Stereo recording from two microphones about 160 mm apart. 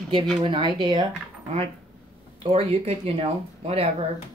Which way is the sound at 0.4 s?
30° right (ahead or behind).